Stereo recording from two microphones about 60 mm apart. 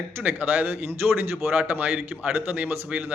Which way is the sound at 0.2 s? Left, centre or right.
Right.